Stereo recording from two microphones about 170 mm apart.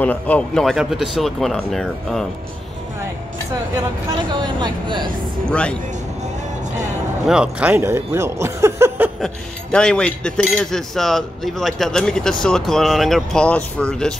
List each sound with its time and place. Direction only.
0.0 s speech: 10° left (ahead or behind)
4.3 s speech: 25° right (ahead or behind)
5.5 s speech: 5° left (ahead or behind)
7.2 s speech: 5° right (ahead or behind)
9.2 s speech: 5° left (ahead or behind)